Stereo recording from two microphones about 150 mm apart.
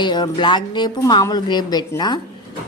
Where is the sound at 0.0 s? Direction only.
30° left (ahead or behind).